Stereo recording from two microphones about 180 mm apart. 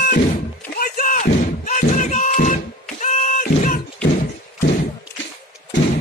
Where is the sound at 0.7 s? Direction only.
50° left (ahead or behind).